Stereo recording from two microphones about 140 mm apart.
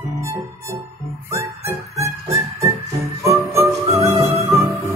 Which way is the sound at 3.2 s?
20° right (ahead or behind).